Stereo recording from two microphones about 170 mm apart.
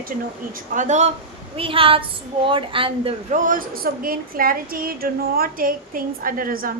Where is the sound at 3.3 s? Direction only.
50° right (ahead or behind).